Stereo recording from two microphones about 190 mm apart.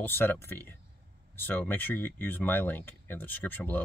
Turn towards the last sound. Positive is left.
turn(degrees=10)  # may be behind; listen again after turning